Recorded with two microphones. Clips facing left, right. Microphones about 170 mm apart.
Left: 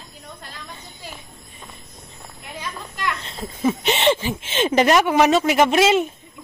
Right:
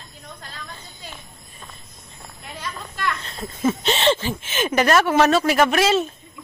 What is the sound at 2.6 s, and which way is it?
Children playing, 15° left (ahead or behind).